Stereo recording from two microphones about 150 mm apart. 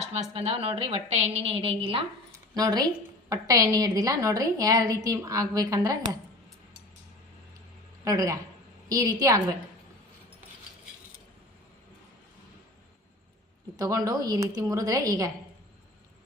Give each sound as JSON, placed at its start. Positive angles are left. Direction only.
{"t": 0.0, "sound": "a woman's voice", "side_deg": -45}
{"t": 2.6, "sound": "a woman's voice", "side_deg": -25}
{"t": 8.0, "sound": "a woman's voice", "side_deg": -20}
{"t": 13.7, "sound": "a woman's voice", "side_deg": -20}